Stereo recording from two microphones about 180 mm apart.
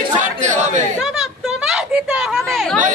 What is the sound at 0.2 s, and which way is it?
Chatter, 45° right (ahead or behind).